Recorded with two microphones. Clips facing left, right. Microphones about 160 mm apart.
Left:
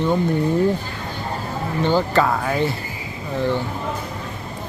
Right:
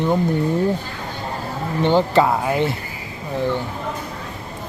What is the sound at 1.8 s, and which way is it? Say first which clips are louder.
Speech: right 3 dB; 25° right (ahead or behind).